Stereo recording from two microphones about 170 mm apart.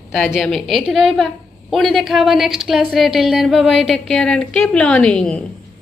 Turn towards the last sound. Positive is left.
turn(degrees=5)  # may be behind; listen again after turning